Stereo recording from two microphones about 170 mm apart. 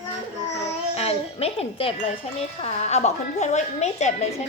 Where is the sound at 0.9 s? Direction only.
35° left (ahead or behind).